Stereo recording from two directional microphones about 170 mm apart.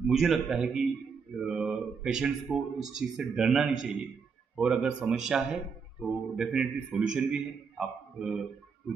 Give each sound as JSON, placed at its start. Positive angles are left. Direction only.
{"t": 0.0, "sound": "speech", "side_deg": 0}